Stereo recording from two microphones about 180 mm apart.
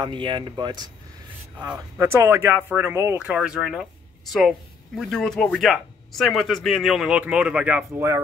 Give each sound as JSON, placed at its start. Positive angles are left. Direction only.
{"t": 0.0, "sound": "speech", "side_deg": -25}